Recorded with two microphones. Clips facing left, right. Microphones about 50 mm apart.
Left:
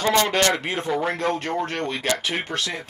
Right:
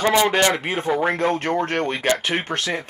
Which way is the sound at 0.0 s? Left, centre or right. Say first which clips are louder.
Right 2 dB; centre.